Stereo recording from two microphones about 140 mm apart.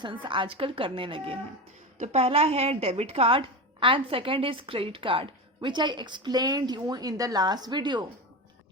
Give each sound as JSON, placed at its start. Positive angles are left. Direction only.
{"t": 0.0, "sound": "speech", "side_deg": -35}